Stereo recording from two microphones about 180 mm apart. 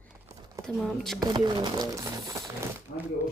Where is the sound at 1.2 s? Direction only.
25° right (ahead or behind).